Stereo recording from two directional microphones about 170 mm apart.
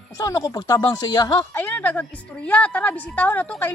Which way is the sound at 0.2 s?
20° left (ahead or behind).